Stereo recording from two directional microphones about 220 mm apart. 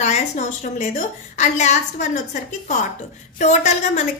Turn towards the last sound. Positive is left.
turn(degrees=30)  # may be behind; listen again after turning